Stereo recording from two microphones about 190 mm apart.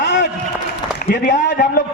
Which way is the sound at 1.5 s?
45° left (ahead or behind).